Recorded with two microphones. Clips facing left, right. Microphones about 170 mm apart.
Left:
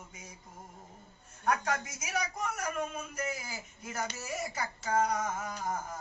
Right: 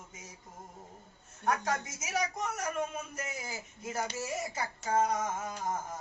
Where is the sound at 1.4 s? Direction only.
25° right (ahead or behind).